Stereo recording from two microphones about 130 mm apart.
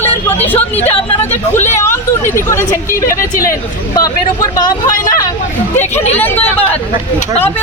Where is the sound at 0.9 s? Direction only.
15° left (ahead or behind).